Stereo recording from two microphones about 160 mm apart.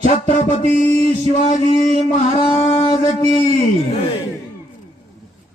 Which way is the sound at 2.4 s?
40° left (ahead or behind).